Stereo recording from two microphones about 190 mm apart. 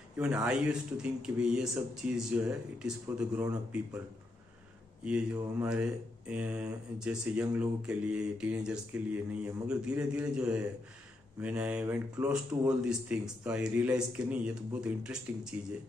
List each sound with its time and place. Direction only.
0.2 s speech: 5° right (ahead or behind)
5.0 s speech: 10° right (ahead or behind)